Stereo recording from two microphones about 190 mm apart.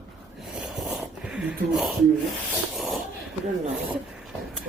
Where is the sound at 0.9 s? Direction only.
Centre (ahead or behind).